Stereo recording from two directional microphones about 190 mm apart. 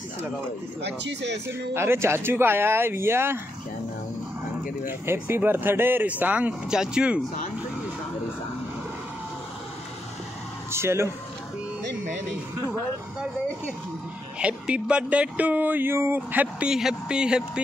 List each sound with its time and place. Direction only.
0.8 s speech: 65° right (ahead or behind)
1.7 s speech: 10° right (ahead or behind)
4.8 s speech: 10° right (ahead or behind)
10.7 s speech: 15° right (ahead or behind)
14.4 s speech: 5° right (ahead or behind)